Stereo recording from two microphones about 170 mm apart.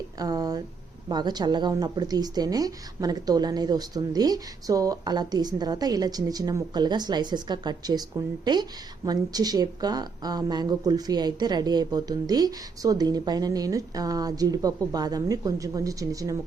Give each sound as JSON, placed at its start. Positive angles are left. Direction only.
{"t": 0.2, "sound": "a woman's voice", "side_deg": -20}
{"t": 9.0, "sound": "a woman's voice", "side_deg": -25}